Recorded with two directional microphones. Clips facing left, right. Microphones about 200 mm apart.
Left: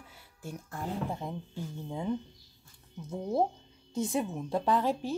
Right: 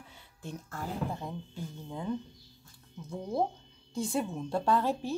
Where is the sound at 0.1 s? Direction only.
10° left (ahead or behind).